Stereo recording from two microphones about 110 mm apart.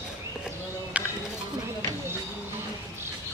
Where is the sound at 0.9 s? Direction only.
10° right (ahead or behind).